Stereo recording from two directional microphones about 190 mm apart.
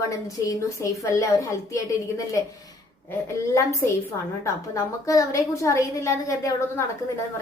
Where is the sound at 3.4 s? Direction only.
15° left (ahead or behind).